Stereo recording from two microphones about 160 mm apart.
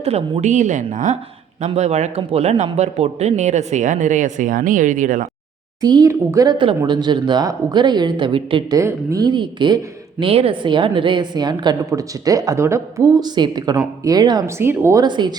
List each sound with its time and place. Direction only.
0.0 s speech: 40° right (ahead or behind)
5.8 s speech: 25° right (ahead or behind)
8.8 s speech: 20° right (ahead or behind)
15.0 s speech: 25° right (ahead or behind)